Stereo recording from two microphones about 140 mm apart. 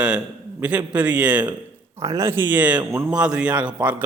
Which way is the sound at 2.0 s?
25° right (ahead or behind).